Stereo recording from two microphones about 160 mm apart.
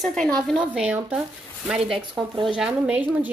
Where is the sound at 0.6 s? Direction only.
10° right (ahead or behind).